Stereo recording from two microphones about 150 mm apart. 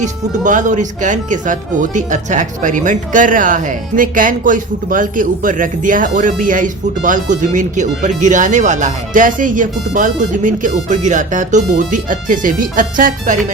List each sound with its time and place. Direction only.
0.0 s speech: 55° right (ahead or behind)